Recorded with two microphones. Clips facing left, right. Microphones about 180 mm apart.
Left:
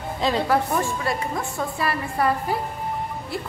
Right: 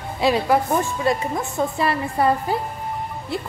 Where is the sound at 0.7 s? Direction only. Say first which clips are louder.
Right 4 dB; 20° right (ahead or behind).